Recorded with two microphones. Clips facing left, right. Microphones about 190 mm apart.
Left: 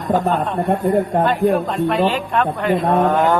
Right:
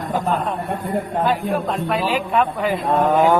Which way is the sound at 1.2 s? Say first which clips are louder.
Left 4 dB; centre (ahead or behind).